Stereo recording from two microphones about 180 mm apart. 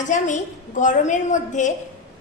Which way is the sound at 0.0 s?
45° left (ahead or behind).